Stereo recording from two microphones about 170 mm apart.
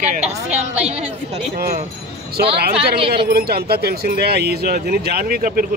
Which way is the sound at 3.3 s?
70° right (ahead or behind).